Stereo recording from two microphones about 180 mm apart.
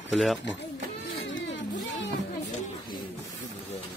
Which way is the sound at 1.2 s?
90° left.